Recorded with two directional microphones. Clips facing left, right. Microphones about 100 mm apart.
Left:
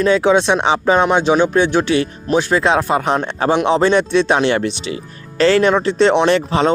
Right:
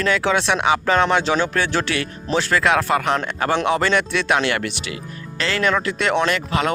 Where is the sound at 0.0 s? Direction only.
20° left (ahead or behind).